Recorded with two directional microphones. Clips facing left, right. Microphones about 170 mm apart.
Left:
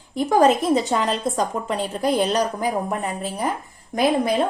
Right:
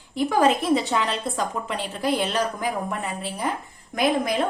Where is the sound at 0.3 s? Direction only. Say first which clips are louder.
Left 3 dB; 40° left (ahead or behind).